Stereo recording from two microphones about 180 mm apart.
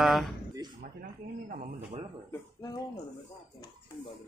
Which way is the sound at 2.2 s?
20° left (ahead or behind).